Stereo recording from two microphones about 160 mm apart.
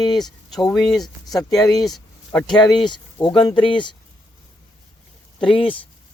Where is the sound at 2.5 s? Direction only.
30° left (ahead or behind).